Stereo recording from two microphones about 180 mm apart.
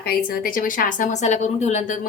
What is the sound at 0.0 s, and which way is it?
A woman's voice, 55° left (ahead or behind).